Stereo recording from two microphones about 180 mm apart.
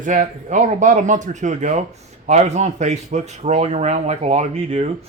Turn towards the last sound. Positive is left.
turn(degrees=-35)  # may be behind; listen again after turning